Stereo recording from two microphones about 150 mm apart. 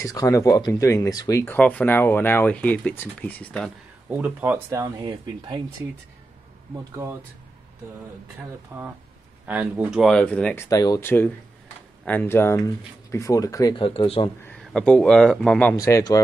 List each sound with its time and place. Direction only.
0.0 s speech: 20° left (ahead or behind)
4.2 s speech: 10° right (ahead or behind); by 5.6 s 30° right (ahead or behind)
6.7 s speech: 20° right (ahead or behind)
8.7 s speech: 10° right (ahead or behind); by 11.1 s 25° left (ahead or behind)
11.1 s speech: 15° left (ahead or behind)
13.7 s speech: 35° left (ahead or behind)
14.4 s speech: 5° left (ahead or behind)
15.7 s speech: 20° left (ahead or behind)